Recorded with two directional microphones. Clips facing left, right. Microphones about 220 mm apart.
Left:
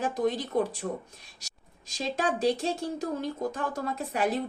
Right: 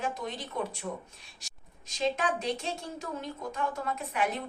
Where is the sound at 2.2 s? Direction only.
35° left (ahead or behind).